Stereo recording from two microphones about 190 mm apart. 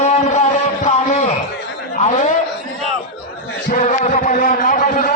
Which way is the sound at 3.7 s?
40° left (ahead or behind).